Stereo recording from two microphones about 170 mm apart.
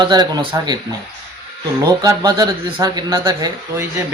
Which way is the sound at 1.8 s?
20° right (ahead or behind).